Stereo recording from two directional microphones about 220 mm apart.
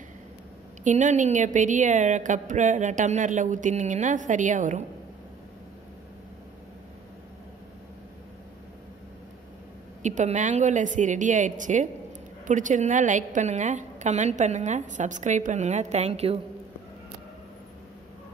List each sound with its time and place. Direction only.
0.8 s a woman's voice: 35° right (ahead or behind)
10.0 s a woman's voice: 35° right (ahead or behind)